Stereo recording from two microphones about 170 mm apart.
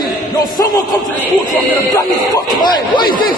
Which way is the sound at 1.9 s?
20° left (ahead or behind).